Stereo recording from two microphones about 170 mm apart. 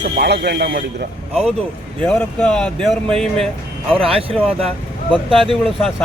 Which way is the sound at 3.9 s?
35° right (ahead or behind).